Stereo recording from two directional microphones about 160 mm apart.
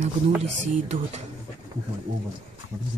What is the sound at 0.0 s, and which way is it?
Speech, 40° right (ahead or behind).